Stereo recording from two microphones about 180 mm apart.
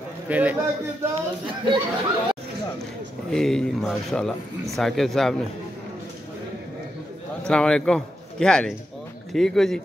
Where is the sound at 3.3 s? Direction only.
5° left (ahead or behind).